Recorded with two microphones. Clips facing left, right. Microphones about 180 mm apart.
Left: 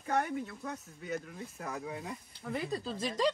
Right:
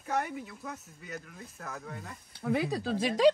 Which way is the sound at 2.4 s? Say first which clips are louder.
Right 7 dB; 75° right (ahead or behind).